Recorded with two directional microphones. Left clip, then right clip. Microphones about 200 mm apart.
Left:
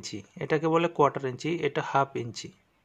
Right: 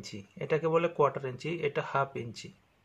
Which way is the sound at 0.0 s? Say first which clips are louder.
Left 4 dB; 40° left (ahead or behind).